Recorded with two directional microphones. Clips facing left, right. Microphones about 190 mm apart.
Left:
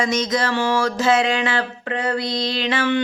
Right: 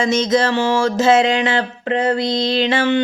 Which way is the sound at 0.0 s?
25° right (ahead or behind).